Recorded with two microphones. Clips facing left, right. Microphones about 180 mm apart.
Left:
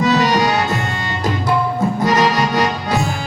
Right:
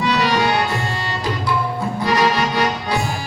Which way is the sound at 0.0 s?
45° left (ahead or behind).